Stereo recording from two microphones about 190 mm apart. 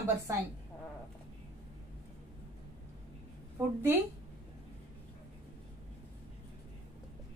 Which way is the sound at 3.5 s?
10° right (ahead or behind).